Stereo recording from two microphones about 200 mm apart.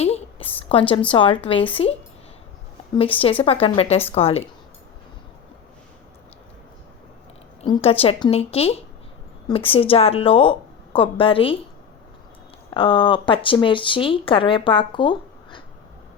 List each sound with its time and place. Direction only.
0.0 s a sound: 30° left (ahead or behind)
1.7 s speech: 30° left (ahead or behind)
7.6 s speech: 30° left (ahead or behind)
12.7 s speech: 25° left (ahead or behind)